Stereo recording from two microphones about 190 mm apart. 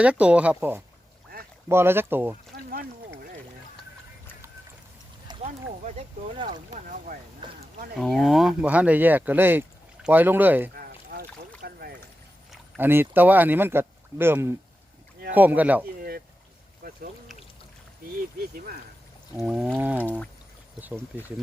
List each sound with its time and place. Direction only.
0.0 s speech: 5° right (ahead or behind)
5.4 s speech: 35° right (ahead or behind)
6.4 s speech: 20° right (ahead or behind)
7.1 s speech: 50° right (ahead or behind)
7.4 s speech: 25° right (ahead or behind)
7.9 s speech: centre (ahead or behind)
10.8 s rowboat: 50° right (ahead or behind)
11.6 s boat: 55° right (ahead or behind)
12.5 s speech: 10° right (ahead or behind)
16.0 s boat: 50° right (ahead or behind)
18.5 s speech: 50° right (ahead or behind)
19.4 s a sound: 5° right (ahead or behind)
20.8 s speech: 10° right (ahead or behind)